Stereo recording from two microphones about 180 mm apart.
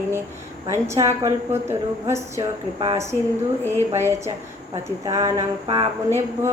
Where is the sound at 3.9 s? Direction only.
15° right (ahead or behind).